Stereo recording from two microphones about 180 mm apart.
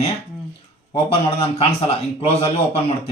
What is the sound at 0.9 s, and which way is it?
A man's voice, 30° left (ahead or behind).